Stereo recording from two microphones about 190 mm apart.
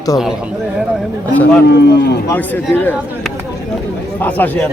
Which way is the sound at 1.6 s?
60° left (ahead or behind).